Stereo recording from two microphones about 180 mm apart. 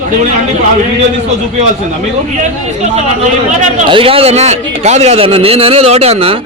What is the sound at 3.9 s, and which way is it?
A man's voice, 30° right (ahead or behind).